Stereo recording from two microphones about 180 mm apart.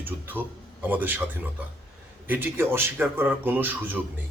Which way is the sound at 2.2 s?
10° right (ahead or behind).